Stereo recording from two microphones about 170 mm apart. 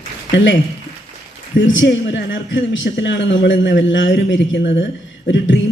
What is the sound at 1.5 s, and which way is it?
A man's voice, 90° left.